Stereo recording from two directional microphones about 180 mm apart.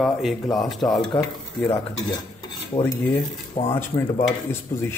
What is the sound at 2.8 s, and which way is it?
Speech, 15° left (ahead or behind).